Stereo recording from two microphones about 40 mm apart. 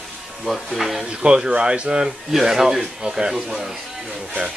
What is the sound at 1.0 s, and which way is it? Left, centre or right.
Speech, right.